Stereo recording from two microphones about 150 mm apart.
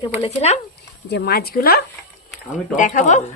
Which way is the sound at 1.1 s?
90° left.